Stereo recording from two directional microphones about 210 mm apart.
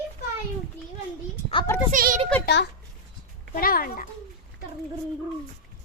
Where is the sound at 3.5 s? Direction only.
45° left (ahead or behind).